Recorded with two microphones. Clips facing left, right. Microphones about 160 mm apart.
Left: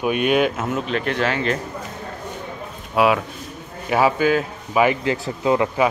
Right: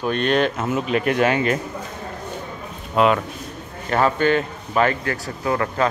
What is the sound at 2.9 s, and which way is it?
Speech, 5° left (ahead or behind).